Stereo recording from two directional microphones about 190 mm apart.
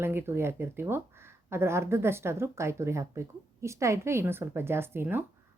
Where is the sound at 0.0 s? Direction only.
10° right (ahead or behind).